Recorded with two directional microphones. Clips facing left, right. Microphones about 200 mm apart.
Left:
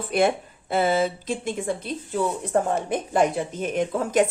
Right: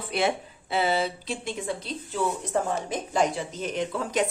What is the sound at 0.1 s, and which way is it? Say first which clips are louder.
Speech: left 5 dB; 50° left (ahead or behind).